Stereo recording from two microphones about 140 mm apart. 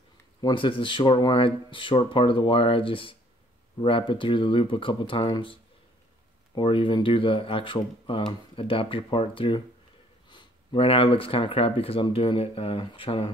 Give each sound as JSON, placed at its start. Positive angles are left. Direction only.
{"t": 0.4, "sound": "speech", "side_deg": 35}